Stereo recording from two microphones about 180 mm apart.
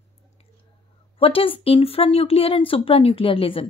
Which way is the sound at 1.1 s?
30° left (ahead or behind).